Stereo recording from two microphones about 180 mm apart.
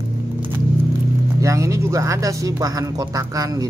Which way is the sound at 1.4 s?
15° right (ahead or behind).